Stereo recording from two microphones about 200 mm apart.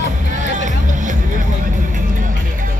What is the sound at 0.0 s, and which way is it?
Music, 40° right (ahead or behind).